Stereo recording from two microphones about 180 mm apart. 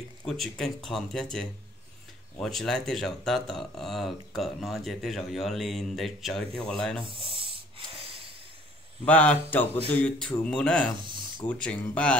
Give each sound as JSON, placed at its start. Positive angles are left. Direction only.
{"t": 0.2, "sound": "speech", "side_deg": 0}
{"t": 7.1, "sound": "snake", "side_deg": -30}
{"t": 9.0, "sound": "speech", "side_deg": 10}